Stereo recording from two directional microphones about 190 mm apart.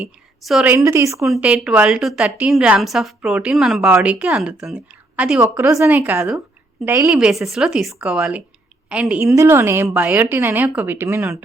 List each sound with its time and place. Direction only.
0.0 s a woman's voice: 5° right (ahead or behind)
1.2 s a woman's voice: 5° right (ahead or behind)
7.1 s a woman's voice: 5° right (ahead or behind)